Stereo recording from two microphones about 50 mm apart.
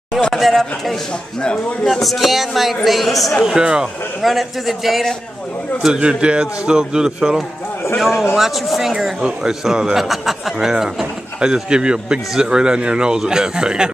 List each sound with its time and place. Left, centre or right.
0.3 s a man's voice: centre
3.4 s speech: centre
4.2 s a man's voice: centre
5.9 s speech: centre
8.0 s a man's voice: centre